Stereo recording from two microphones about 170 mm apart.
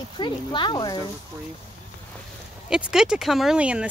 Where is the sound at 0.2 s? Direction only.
30° left (ahead or behind).